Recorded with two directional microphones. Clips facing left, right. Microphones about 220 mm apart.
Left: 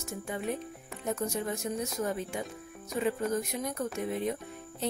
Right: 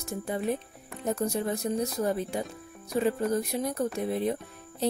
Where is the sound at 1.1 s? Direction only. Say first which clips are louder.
Right 4 dB; 35° right (ahead or behind).